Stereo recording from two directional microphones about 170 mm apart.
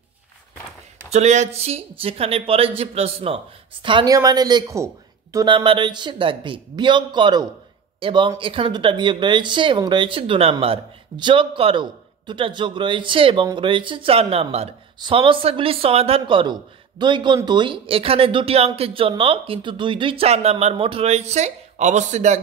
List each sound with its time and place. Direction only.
1.1 s speech: 40° right (ahead or behind)